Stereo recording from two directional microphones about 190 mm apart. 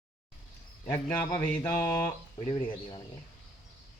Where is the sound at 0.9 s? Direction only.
10° left (ahead or behind).